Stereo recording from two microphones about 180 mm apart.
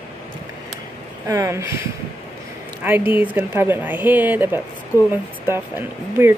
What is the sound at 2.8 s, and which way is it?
Speech, 10° right (ahead or behind).